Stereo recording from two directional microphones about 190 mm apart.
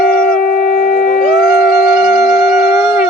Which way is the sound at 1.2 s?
Centre (ahead or behind).